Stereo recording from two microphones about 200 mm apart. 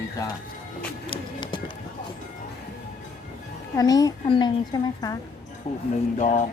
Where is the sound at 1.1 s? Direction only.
25° left (ahead or behind).